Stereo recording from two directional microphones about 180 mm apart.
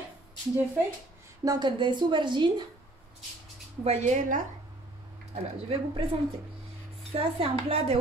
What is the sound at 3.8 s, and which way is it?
Speech, 40° right (ahead or behind).